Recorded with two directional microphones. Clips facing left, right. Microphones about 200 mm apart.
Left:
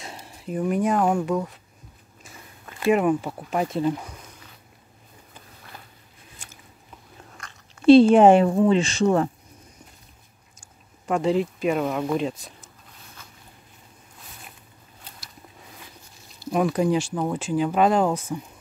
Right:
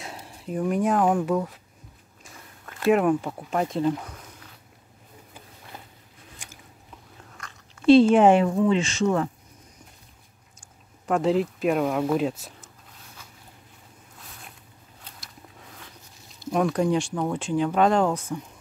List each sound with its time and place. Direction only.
0.0 s speech: centre (ahead or behind)
2.2 s a sound: 5° left (ahead or behind)
6.3 s biting: 15° right (ahead or behind)
7.8 s speech: 30° left (ahead or behind)
10.6 s speech: centre (ahead or behind)
16.3 s speech: 5° left (ahead or behind)